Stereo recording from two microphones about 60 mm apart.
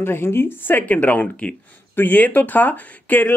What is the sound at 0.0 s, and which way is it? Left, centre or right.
Speech, left.